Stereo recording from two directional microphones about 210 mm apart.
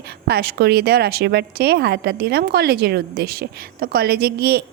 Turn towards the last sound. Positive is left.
turn(degrees=-50)  # may be behind; listen again after turning